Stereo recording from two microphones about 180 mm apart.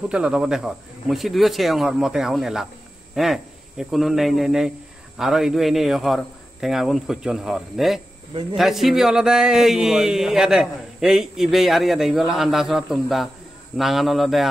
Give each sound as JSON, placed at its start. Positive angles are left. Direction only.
{"t": 0.1, "sound": "speech", "side_deg": -5}